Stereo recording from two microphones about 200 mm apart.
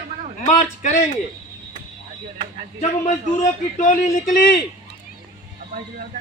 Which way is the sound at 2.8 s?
35° left (ahead or behind).